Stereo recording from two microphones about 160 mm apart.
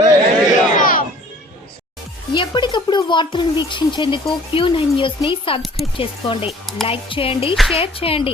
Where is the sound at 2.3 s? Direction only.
30° left (ahead or behind).